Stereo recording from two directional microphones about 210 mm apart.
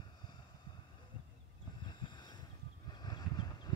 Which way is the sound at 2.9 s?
20° left (ahead or behind).